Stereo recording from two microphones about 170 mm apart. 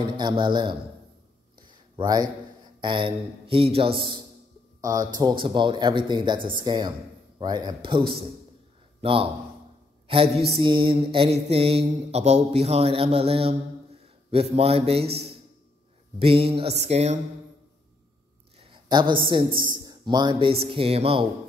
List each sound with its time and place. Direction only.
0.2 s speech: 25° right (ahead or behind)
1.6 s a sound: 25° right (ahead or behind)
2.8 s mantra: 30° right (ahead or behind)
4.8 s speech: 20° right (ahead or behind)
9.0 s mantra: 30° right (ahead or behind)
10.0 s a man's voice: 35° right (ahead or behind)
10.6 s mantra: 30° right (ahead or behind)
18.6 s speech: 30° right (ahead or behind)